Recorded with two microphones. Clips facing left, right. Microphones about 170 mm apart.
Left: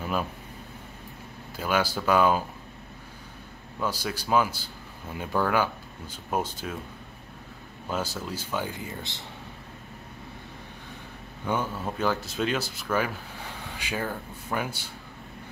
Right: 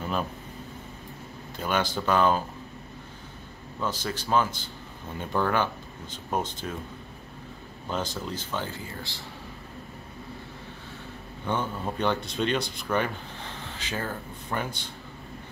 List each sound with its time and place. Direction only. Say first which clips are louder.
0.0 s a sound: even; 5° left (ahead or behind)
1.6 s speech: left 1 dB; 5° left (ahead or behind)
3.8 s speech: left 1 dB; 10° left (ahead or behind)
7.9 s speech: even; 10° left (ahead or behind)
11.4 s speech: even; 10° left (ahead or behind)